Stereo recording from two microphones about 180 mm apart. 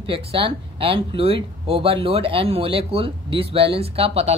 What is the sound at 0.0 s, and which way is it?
Speech, 30° right (ahead or behind).